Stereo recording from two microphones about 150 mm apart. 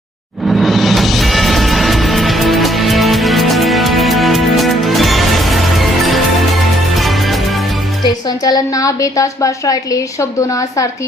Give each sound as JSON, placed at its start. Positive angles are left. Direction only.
{"t": 0.4, "sound": "music", "side_deg": 0}
{"t": 8.0, "sound": "a woman's voice", "side_deg": 25}